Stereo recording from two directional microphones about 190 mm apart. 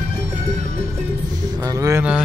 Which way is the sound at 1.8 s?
15° right (ahead or behind).